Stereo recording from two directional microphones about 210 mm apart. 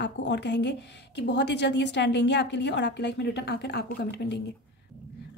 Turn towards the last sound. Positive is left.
turn(degrees=55)  # may be behind; listen again after turning